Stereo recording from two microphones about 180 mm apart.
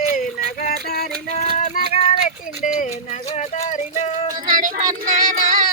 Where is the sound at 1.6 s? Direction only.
40° left (ahead or behind).